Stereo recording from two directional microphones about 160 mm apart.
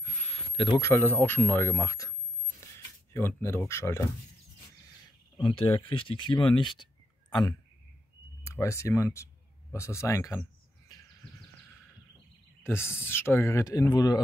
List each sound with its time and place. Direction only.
0.0 s a sound: 45° left (ahead or behind)
0.7 s speech: 15° left (ahead or behind)
5.4 s speech: 35° left (ahead or behind); by 10.4 s 20° left (ahead or behind)
12.6 s speech: 15° left (ahead or behind)